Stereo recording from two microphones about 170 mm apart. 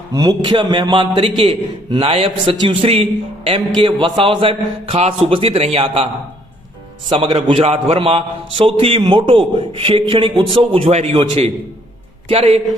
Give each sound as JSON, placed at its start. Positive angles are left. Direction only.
{"t": 0.1, "sound": "a man's voice", "side_deg": -20}
{"t": 7.1, "sound": "a man's voice", "side_deg": -35}